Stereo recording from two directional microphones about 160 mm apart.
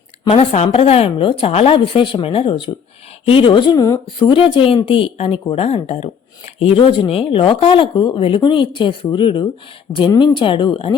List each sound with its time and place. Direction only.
0.3 s speech: 40° left (ahead or behind)